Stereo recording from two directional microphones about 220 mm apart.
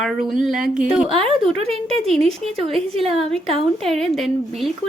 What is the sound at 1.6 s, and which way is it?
Speech, centre (ahead or behind).